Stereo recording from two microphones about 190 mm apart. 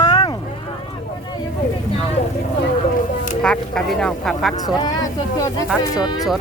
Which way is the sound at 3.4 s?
5° left (ahead or behind).